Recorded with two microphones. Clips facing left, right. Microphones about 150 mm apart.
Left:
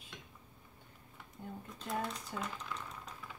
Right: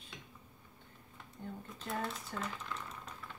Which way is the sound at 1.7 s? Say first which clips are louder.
Left 1 dB; centre (ahead or behind).